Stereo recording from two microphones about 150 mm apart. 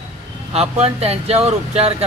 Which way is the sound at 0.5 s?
40° right (ahead or behind).